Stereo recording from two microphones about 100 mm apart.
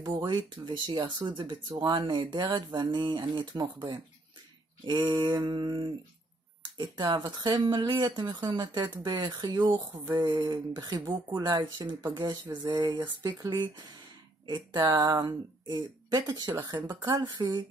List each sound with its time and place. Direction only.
0.0 s speech: 50° right (ahead or behind); by 10.3 s 35° right (ahead or behind)
10.4 s speech: 45° right (ahead or behind)
12.1 s speech: 45° right (ahead or behind)